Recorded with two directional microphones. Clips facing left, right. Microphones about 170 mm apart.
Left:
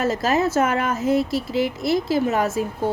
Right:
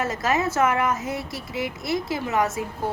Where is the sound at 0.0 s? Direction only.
30° left (ahead or behind).